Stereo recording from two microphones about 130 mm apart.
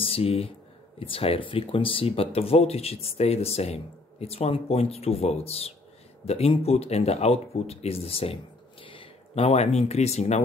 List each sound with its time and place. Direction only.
0.0 s speech: 50° left (ahead or behind)